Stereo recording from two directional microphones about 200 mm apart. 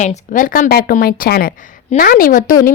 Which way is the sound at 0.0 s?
45° left (ahead or behind).